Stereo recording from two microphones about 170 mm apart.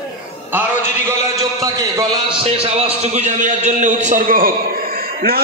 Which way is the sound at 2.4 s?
35° right (ahead or behind).